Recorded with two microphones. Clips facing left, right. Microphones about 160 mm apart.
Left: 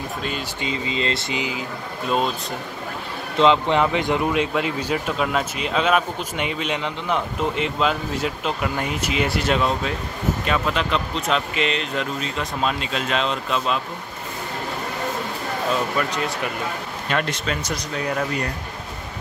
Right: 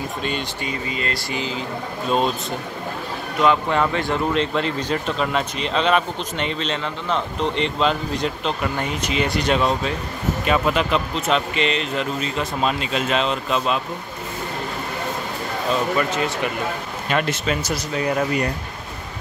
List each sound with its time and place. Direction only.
0.7 s speech: 25° left (ahead or behind)
2.0 s speech: centre (ahead or behind)
3.3 s a man's voice: 20° left (ahead or behind); by 13.7 s centre (ahead or behind)
16.0 s speech: centre (ahead or behind)